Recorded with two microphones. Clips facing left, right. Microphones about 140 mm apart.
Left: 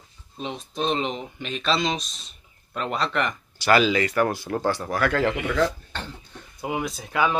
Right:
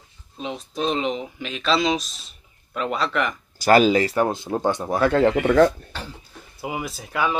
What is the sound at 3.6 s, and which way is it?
Speech, 40° right (ahead or behind).